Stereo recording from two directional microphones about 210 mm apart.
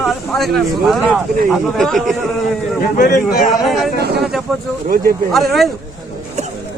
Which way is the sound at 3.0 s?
40° left (ahead or behind).